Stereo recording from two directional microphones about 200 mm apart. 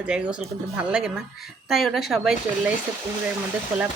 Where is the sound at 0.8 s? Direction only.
5° right (ahead or behind).